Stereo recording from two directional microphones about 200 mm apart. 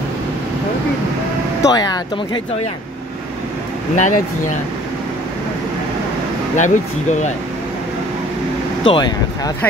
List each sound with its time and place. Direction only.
1.6 s speech: 20° left (ahead or behind)
3.9 s speech: 40° left (ahead or behind)
6.5 s speech: 35° left (ahead or behind)
8.8 s speech: 20° left (ahead or behind)